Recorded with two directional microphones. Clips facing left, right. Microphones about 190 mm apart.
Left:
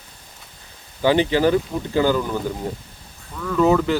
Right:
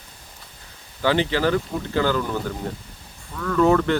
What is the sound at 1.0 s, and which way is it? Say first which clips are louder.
Speech: left 4 dB; 15° left (ahead or behind).